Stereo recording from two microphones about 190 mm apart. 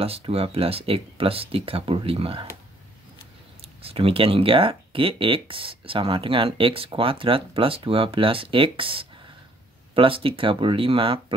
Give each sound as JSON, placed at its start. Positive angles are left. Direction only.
{"t": 0.0, "sound": "speech", "side_deg": -30}
{"t": 3.8, "sound": "speech", "side_deg": -30}